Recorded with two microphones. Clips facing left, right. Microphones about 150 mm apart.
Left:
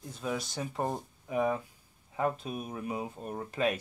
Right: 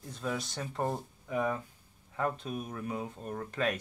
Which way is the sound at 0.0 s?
5° left (ahead or behind).